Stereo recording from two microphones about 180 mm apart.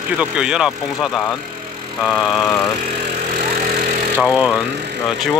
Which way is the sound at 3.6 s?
50° right (ahead or behind).